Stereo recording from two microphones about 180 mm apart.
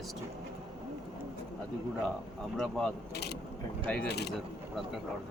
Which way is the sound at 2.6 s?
5° left (ahead or behind).